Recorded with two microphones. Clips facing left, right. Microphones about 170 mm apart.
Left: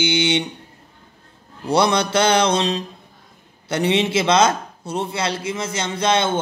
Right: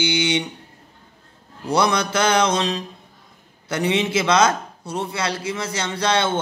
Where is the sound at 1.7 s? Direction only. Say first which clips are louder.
Left 2 dB; 30° left (ahead or behind).